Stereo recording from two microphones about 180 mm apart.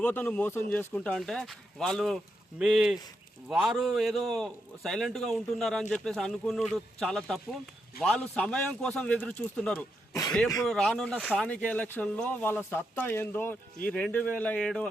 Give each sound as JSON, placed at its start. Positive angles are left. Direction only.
{"t": 0.0, "sound": "speech", "side_deg": 10}
{"t": 10.1, "sound": "speech", "side_deg": 20}
{"t": 10.6, "sound": "speech", "side_deg": 5}